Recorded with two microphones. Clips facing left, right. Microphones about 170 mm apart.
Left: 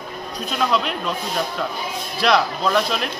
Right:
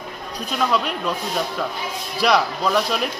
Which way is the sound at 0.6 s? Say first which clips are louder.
Even; 5° right (ahead or behind).